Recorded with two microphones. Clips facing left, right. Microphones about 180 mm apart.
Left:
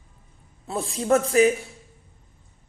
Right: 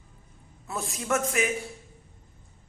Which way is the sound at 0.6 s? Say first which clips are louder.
Left 7 dB; 30° left (ahead or behind).